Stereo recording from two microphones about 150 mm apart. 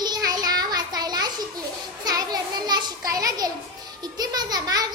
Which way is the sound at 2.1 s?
25° right (ahead or behind).